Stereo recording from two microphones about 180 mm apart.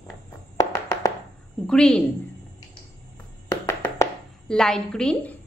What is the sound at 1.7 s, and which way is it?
Speech, 5° left (ahead or behind).